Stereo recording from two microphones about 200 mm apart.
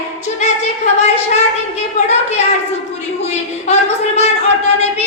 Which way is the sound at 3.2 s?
35° left (ahead or behind).